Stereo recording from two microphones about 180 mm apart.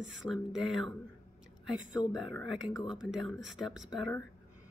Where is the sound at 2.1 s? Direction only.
Centre (ahead or behind).